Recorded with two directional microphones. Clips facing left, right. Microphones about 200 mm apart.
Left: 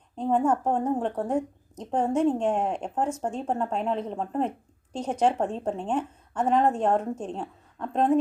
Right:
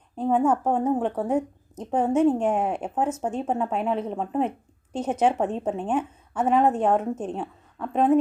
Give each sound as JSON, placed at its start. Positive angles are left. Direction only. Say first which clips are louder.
{"t": 0.2, "sound": "a woman's voice", "louder": "right 2 dB", "side_deg": -5}